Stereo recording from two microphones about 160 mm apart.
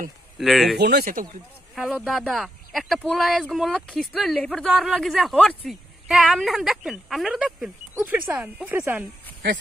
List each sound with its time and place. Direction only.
0.4 s speech: centre (ahead or behind)
0.7 s speech: 80° right
1.8 s speech: centre (ahead or behind)